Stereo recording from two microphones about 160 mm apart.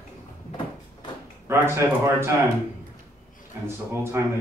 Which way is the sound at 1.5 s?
15° right (ahead or behind).